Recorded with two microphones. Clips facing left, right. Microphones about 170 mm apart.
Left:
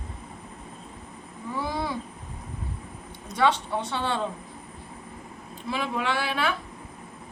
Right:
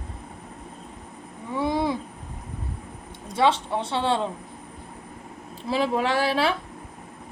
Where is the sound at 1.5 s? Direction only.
25° right (ahead or behind).